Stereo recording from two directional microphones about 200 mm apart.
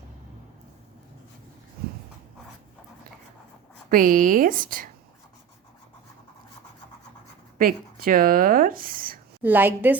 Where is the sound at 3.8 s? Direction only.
45° right (ahead or behind).